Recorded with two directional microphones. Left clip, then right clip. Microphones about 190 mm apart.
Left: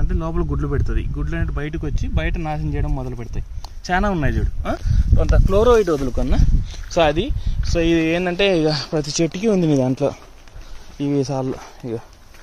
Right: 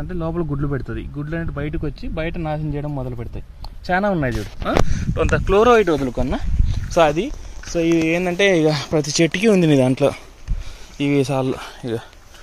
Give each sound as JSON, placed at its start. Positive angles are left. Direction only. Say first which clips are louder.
{"t": 0.1, "sound": "speech", "louder": "right 1 dB", "side_deg": -40}
{"t": 5.6, "sound": "speech", "louder": "right 1 dB", "side_deg": -15}
{"t": 5.9, "sound": "speech", "louder": "right 1 dB", "side_deg": 0}
{"t": 6.7, "sound": "speech", "louder": "right 1 dB", "side_deg": -10}